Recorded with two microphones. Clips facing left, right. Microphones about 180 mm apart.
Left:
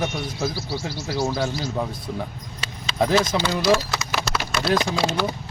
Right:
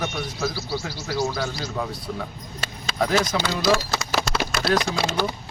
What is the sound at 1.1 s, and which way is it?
Speech, 30° left (ahead or behind).